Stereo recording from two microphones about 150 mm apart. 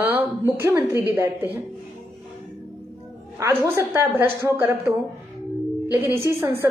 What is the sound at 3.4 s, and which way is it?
A woman's voice, 15° right (ahead or behind).